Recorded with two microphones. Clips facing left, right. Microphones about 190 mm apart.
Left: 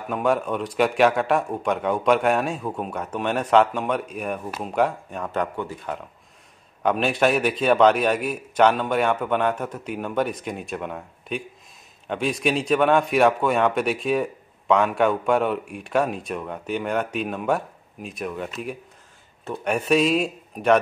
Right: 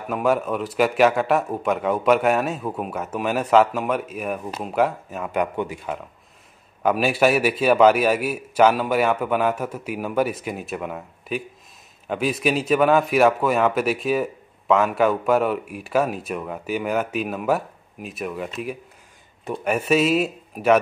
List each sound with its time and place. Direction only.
0.1 s speech: centre (ahead or behind)